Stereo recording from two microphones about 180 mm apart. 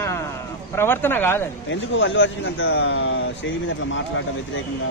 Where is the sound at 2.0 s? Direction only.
90° left.